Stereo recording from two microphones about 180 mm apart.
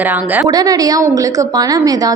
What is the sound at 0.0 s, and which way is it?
Speech, 10° right (ahead or behind).